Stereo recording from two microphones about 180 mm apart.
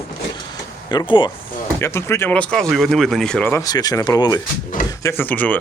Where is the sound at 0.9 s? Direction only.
25° left (ahead or behind).